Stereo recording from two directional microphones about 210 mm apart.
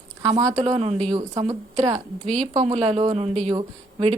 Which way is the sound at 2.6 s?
30° right (ahead or behind).